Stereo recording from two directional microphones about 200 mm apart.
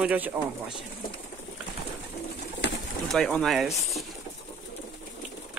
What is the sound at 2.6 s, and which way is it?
Bird, 55° left (ahead or behind).